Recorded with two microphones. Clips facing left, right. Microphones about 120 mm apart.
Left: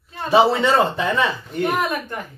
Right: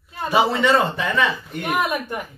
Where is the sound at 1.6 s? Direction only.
15° right (ahead or behind).